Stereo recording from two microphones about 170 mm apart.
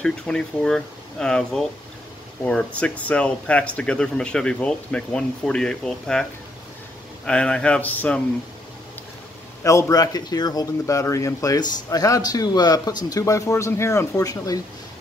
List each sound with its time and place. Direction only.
0.0 s speech: 5° left (ahead or behind)
7.2 s a man's voice: 5° left (ahead or behind)
9.6 s speech: 15° left (ahead or behind)